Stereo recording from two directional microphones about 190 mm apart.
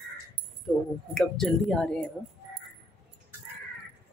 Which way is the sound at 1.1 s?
5° left (ahead or behind).